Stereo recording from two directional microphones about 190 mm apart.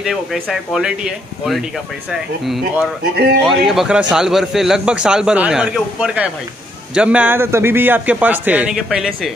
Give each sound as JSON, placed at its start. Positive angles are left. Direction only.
{"t": 0.0, "sound": "a man's voice", "side_deg": 0}